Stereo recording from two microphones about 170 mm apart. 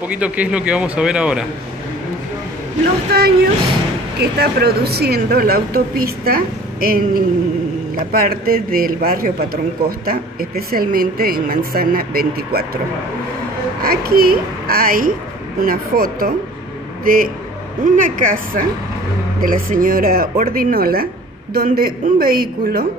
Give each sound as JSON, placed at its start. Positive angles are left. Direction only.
{"t": 0.1, "sound": "speech", "side_deg": -5}
{"t": 3.1, "sound": "a woman's voice", "side_deg": -65}
{"t": 13.8, "sound": "a woman's voice", "side_deg": -65}